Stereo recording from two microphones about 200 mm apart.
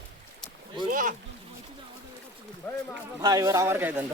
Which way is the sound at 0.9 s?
40° right (ahead or behind).